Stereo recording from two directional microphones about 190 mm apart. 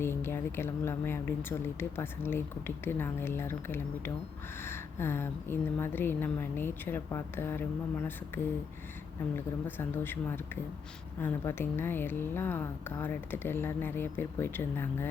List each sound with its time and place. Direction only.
0.0 s a woman's voice: 10° left (ahead or behind)
9.3 s a woman's voice: 10° left (ahead or behind)